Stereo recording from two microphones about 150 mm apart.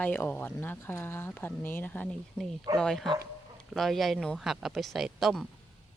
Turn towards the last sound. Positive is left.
turn(degrees=0)  # may be behind; listen again after turning